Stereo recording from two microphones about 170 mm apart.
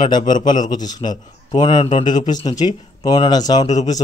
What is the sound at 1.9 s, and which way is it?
Speech, 45° left (ahead or behind).